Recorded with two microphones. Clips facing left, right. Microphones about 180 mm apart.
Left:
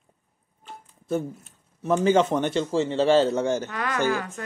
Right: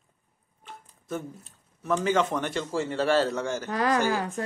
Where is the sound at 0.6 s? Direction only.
30° left (ahead or behind).